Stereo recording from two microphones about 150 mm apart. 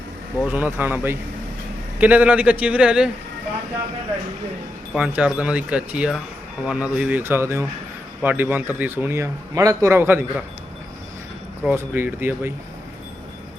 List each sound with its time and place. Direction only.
0.4 s a man's voice: 10° right (ahead or behind)
4.9 s a man's voice: 10° right (ahead or behind)
11.7 s a man's voice: 15° right (ahead or behind)